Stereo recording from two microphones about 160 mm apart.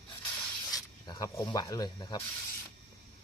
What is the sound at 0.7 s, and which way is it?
Speech, 25° left (ahead or behind).